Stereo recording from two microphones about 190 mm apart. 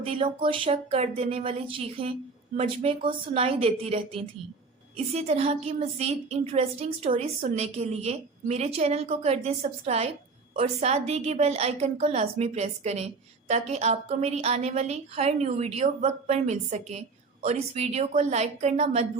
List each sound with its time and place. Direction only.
0.0 s a woman's voice: 30° right (ahead or behind)